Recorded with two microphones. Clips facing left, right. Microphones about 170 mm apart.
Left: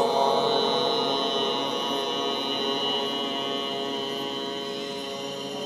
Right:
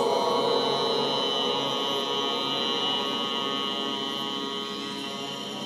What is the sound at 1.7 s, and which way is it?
Music, 55° left (ahead or behind).